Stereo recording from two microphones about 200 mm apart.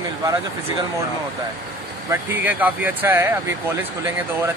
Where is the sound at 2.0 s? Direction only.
10° right (ahead or behind).